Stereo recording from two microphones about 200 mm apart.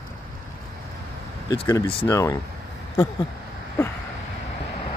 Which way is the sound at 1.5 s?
15° left (ahead or behind).